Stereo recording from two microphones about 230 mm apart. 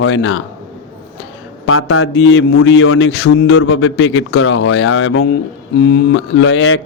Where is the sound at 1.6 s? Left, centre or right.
Left.